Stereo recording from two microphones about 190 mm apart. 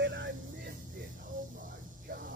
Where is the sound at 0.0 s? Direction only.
65° right (ahead or behind).